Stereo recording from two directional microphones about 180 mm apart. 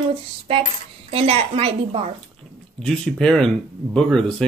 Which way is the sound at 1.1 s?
35° right (ahead or behind).